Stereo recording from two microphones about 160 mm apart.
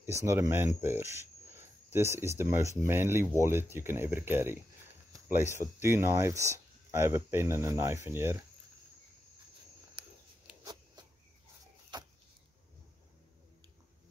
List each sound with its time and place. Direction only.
0.0 s speech: 20° right (ahead or behind)
5.8 s speech: 15° right (ahead or behind)
10.6 s a sound: 25° right (ahead or behind)